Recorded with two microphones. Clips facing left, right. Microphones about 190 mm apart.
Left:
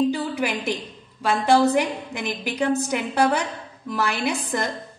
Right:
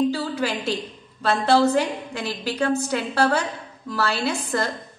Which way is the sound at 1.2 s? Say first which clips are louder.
Even; 10° left (ahead or behind).